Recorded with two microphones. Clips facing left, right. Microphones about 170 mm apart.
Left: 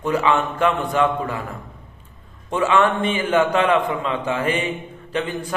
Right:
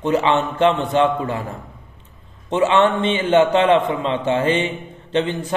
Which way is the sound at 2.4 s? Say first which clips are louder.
Right 2 dB; 25° right (ahead or behind).